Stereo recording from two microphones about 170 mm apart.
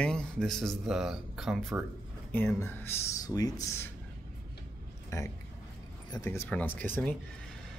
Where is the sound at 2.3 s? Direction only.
10° left (ahead or behind).